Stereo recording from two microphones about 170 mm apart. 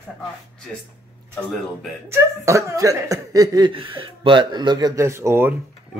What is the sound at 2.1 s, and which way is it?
Speech, 15° right (ahead or behind).